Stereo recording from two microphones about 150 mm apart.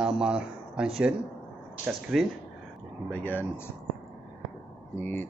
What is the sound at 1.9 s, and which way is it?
Speech, centre (ahead or behind).